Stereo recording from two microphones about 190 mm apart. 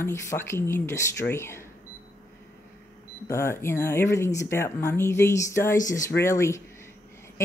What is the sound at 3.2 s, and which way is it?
Speech, 15° left (ahead or behind).